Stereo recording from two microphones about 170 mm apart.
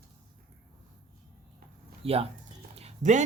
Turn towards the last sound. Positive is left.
turn(degrees=-40)  # may be behind; listen again after turning